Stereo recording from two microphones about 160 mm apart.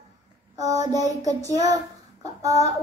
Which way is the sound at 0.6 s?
25° right (ahead or behind).